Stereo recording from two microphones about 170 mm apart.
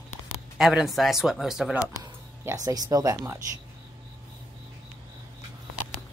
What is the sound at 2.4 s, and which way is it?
Speech, 20° right (ahead or behind).